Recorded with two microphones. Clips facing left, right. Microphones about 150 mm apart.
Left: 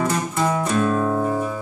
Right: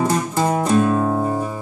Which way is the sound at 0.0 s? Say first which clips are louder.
Right 3 dB; 35° right (ahead or behind).